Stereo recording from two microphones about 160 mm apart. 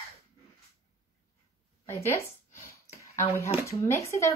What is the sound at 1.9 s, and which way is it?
Speech, 15° left (ahead or behind).